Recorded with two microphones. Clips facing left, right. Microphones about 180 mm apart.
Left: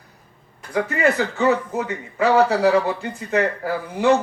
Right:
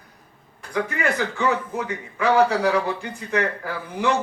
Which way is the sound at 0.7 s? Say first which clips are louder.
Left 4 dB; 30° left (ahead or behind).